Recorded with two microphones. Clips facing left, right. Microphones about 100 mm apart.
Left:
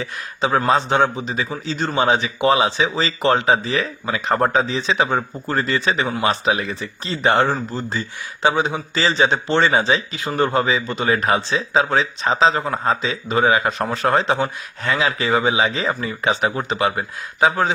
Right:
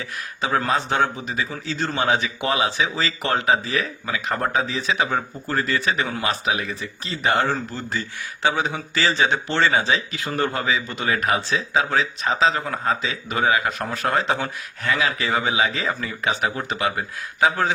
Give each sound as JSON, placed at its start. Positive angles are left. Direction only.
{"t": 0.0, "sound": "speech", "side_deg": 25}
{"t": 6.2, "sound": "speech", "side_deg": 35}
{"t": 7.4, "sound": "speech", "side_deg": 20}